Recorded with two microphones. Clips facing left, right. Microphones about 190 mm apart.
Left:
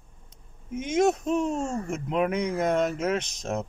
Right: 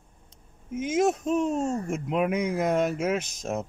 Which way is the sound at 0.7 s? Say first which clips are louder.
Left 1 dB; 5° right (ahead or behind).